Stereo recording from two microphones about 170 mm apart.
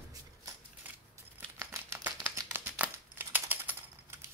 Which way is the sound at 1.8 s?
15° right (ahead or behind).